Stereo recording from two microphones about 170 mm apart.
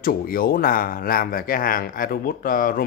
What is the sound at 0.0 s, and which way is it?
Speech, 60° left (ahead or behind).